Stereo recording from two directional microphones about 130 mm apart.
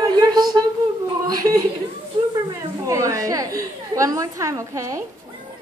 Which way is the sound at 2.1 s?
40° right (ahead or behind).